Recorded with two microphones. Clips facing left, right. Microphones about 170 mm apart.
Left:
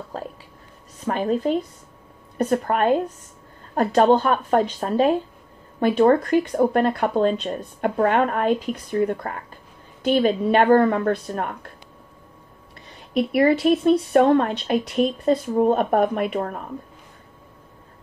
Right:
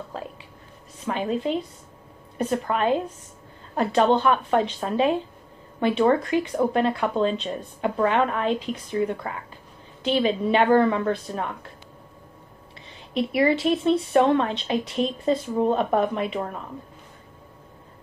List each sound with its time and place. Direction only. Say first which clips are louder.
1.0 s a woman's voice: left 4 dB; 45° left (ahead or behind)
13.3 s speech: left 4 dB; 50° left (ahead or behind)
15.0 s speech: left 5 dB; 10° left (ahead or behind)
15.7 s speech: left 3 dB; 50° left (ahead or behind)